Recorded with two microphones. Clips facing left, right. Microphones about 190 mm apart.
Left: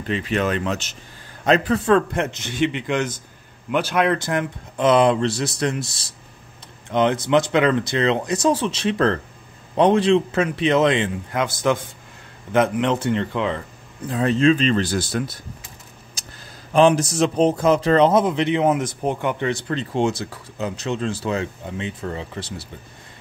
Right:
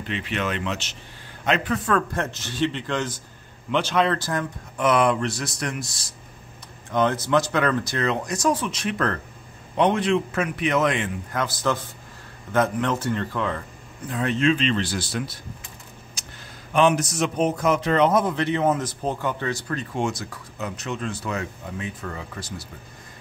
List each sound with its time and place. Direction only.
0.1 s speech: 40° left (ahead or behind)
6.9 s speech: 20° left (ahead or behind)
14.0 s speech: 35° left (ahead or behind)
16.2 s a sound: 35° left (ahead or behind)
16.7 s speech: 30° left (ahead or behind)